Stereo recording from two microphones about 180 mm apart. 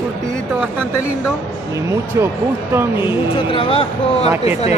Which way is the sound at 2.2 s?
15° right (ahead or behind).